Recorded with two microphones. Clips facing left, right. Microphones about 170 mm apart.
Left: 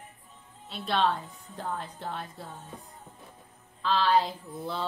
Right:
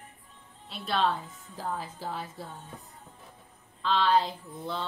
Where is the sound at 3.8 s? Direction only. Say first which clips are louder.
Even; centre (ahead or behind).